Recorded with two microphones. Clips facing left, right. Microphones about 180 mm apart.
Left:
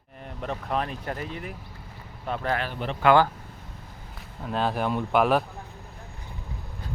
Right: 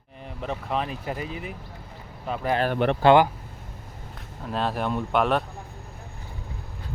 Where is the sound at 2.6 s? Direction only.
60° right (ahead or behind).